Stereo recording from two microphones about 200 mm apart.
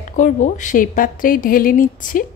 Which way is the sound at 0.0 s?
40° left (ahead or behind).